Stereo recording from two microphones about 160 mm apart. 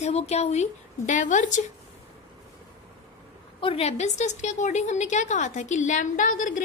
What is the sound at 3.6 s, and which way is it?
A woman's voice, 40° left (ahead or behind).